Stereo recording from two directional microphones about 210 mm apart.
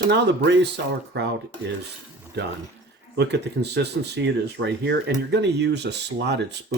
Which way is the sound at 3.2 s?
55° right (ahead or behind).